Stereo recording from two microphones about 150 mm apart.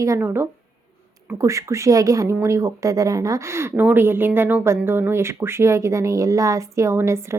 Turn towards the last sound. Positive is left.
turn(degrees=-20)  # may be behind; listen again after turning